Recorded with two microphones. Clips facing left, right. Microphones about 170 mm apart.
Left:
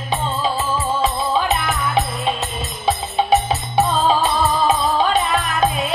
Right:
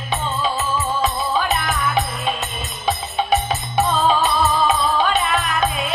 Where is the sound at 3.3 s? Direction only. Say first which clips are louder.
Left 3 dB; 30° left (ahead or behind).